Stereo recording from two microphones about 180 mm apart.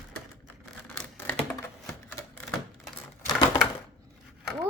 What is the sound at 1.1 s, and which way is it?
Computer keyboard, 10° left (ahead or behind).